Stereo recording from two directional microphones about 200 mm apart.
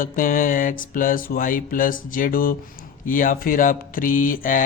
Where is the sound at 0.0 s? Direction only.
40° left (ahead or behind).